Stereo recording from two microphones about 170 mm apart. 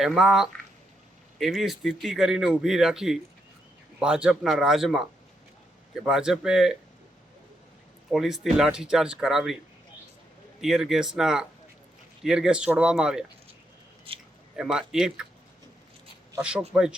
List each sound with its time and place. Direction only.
0.0 s speech: 5° right (ahead or behind)
8.1 s speech: centre (ahead or behind)
10.6 s speech: centre (ahead or behind)
14.1 s a sound: 35° right (ahead or behind)
14.5 s speech: 5° right (ahead or behind)
16.4 s speech: 5° right (ahead or behind)